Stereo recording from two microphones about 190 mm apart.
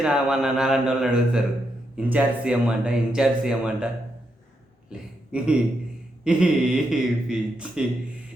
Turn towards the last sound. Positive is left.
turn(degrees=-5)  # may be behind; listen again after turning